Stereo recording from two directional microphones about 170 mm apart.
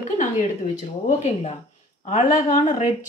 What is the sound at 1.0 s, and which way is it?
A woman's voice, 40° left (ahead or behind).